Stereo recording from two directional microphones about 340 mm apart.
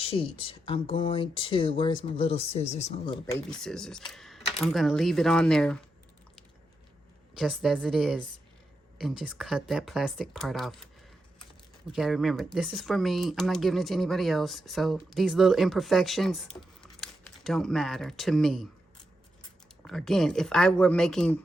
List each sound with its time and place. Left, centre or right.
0.0 s speech: centre
3.5 s speech: centre
7.3 s speech: centre
11.9 s speech: centre